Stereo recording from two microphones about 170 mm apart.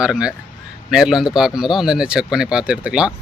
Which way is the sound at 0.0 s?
5° right (ahead or behind).